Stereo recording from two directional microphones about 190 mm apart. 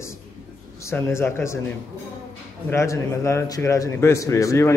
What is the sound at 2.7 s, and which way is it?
A man's voice, 15° left (ahead or behind).